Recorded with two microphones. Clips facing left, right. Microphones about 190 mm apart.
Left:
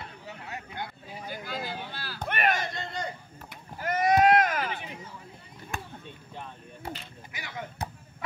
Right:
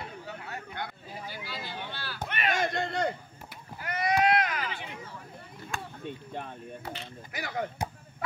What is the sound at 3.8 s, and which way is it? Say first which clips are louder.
Run: left 4 dB; 45° left (ahead or behind).